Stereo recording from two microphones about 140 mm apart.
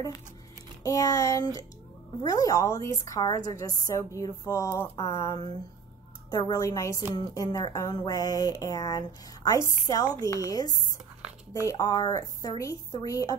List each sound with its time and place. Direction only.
0.8 s speech: 25° left (ahead or behind)